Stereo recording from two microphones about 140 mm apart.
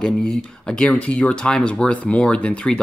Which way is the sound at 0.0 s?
5° left (ahead or behind).